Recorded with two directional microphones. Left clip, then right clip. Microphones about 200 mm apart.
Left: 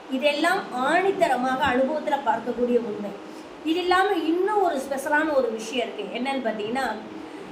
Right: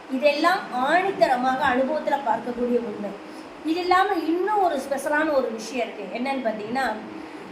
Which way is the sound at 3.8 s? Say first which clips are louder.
Right 1 dB; 5° left (ahead or behind).